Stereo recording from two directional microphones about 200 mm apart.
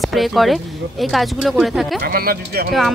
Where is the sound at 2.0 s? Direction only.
50° right (ahead or behind).